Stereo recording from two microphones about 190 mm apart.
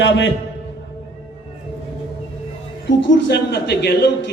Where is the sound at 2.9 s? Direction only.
70° left (ahead or behind).